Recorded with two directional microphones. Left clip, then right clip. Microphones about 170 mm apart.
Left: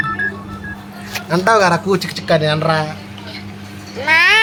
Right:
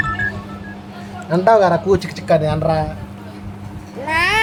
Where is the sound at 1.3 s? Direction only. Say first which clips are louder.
Even; 25° right (ahead or behind); by 2.9 s 10° right (ahead or behind).